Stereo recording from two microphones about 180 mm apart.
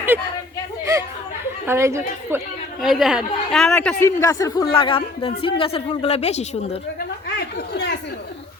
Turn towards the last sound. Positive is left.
turn(degrees=70)  # may be behind; listen again after turning